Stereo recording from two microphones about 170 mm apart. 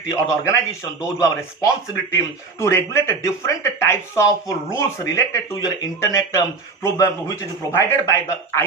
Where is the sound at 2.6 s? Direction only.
15° left (ahead or behind).